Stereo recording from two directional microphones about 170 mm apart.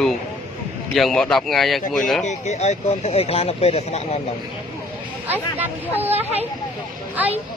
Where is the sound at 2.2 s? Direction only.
45° left (ahead or behind).